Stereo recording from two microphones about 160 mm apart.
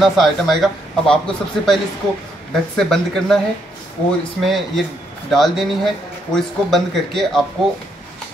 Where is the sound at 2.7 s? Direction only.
5° left (ahead or behind).